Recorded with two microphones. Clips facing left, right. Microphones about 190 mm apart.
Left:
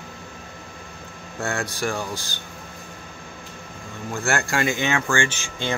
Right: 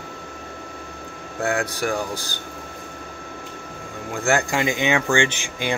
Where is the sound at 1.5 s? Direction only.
10° right (ahead or behind).